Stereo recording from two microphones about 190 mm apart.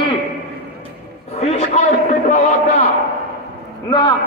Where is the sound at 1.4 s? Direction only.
35° left (ahead or behind).